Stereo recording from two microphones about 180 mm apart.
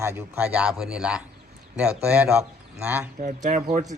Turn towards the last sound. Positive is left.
turn(degrees=-40)  # may be behind; listen again after turning